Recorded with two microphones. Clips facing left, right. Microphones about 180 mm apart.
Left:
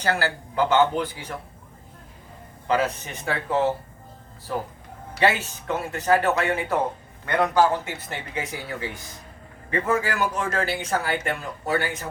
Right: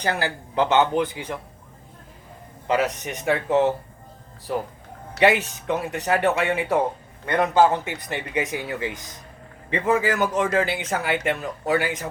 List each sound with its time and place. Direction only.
0.0 s a man's voice: 20° right (ahead or behind)
2.6 s a man's voice: 20° right (ahead or behind)
5.2 s a man's voice: 15° right (ahead or behind)